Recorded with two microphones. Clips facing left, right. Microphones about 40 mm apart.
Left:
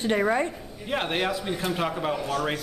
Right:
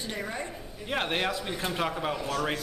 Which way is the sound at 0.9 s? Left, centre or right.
Centre.